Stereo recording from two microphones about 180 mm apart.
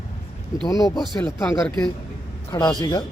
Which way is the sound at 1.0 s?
Centre (ahead or behind).